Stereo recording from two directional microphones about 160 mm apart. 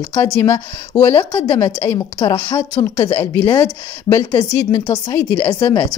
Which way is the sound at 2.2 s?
25° left (ahead or behind).